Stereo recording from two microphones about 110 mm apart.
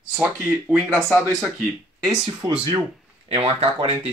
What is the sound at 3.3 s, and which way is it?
Speech, 65° right (ahead or behind).